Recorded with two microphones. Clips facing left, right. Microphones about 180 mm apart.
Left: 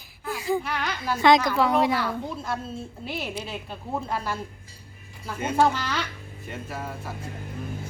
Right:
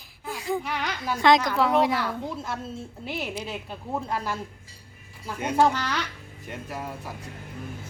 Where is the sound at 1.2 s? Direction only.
Centre (ahead or behind).